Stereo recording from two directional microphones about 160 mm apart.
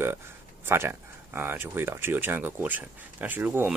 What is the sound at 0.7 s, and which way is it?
Speech, 15° right (ahead or behind).